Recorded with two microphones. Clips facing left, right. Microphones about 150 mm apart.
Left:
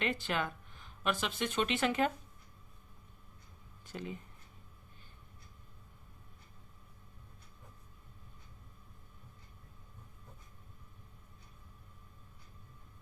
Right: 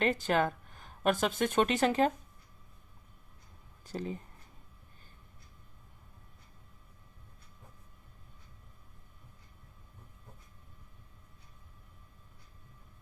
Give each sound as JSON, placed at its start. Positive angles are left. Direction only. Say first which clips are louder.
{"t": 0.0, "sound": "speech", "louder": "right 7 dB", "side_deg": -40}
{"t": 3.8, "sound": "speech", "louder": "right 5 dB", "side_deg": -35}